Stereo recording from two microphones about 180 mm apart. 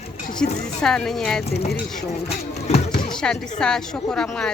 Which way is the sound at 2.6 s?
40° left (ahead or behind).